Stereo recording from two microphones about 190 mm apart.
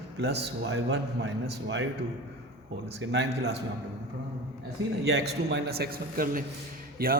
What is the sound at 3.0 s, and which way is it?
Speech, 65° right (ahead or behind).